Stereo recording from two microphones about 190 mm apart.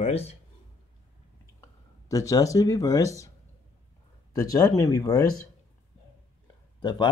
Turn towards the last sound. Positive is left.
turn(degrees=20)  # may be behind; listen again after turning